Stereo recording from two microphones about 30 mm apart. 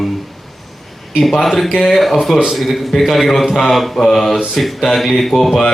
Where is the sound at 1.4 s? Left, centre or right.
Centre.